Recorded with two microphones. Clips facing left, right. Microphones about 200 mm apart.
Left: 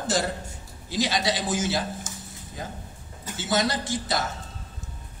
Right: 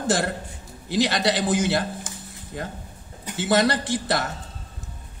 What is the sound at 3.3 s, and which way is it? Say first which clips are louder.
Speech: right 5 dB; 60° right (ahead or behind).